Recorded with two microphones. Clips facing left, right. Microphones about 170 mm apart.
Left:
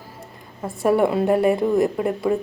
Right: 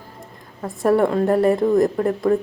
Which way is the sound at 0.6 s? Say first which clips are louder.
Right 1 dB; 5° left (ahead or behind).